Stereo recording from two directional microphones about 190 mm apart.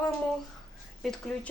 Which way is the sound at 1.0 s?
5° left (ahead or behind).